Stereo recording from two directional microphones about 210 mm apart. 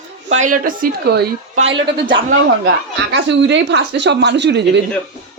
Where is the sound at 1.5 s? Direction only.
60° right (ahead or behind).